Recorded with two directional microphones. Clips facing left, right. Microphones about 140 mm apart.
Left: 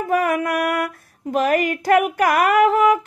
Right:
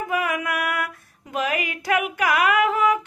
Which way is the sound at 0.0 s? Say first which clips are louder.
Left 6 dB; 40° left (ahead or behind).